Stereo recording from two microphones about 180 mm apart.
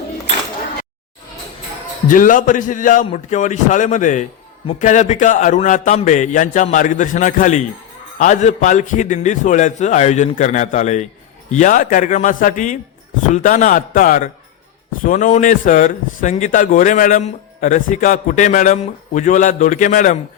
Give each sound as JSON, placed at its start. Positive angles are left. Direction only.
{"t": 2.0, "sound": "speech", "side_deg": 45}